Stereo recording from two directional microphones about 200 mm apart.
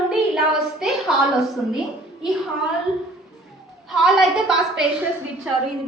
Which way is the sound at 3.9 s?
Centre (ahead or behind).